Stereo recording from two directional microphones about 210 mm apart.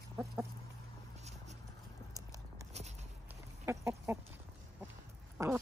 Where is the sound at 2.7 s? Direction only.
30° right (ahead or behind).